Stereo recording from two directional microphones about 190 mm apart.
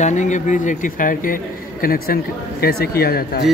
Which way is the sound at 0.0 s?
40° left (ahead or behind).